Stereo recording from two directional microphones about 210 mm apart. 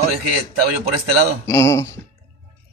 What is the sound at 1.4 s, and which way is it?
Speech, 15° left (ahead or behind).